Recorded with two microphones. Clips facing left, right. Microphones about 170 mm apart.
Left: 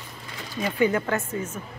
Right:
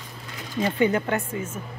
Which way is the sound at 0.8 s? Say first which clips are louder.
Left 1 dB; 25° right (ahead or behind).